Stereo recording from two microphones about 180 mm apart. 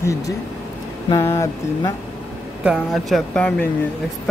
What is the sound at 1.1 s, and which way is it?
Speech, 15° left (ahead or behind).